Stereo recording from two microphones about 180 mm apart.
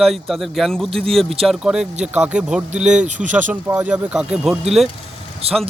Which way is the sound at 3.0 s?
45° right (ahead or behind).